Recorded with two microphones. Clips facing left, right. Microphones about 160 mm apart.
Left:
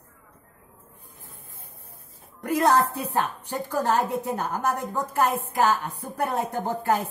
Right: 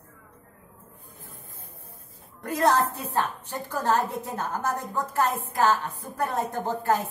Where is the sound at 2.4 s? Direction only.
15° left (ahead or behind).